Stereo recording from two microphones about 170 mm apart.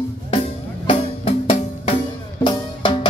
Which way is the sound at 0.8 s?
35° left (ahead or behind).